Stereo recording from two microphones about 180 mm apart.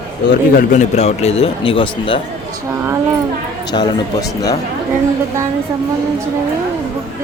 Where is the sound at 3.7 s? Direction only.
25° left (ahead or behind).